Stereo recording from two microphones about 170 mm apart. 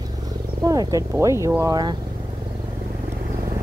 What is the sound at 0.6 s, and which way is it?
Speech, 20° right (ahead or behind).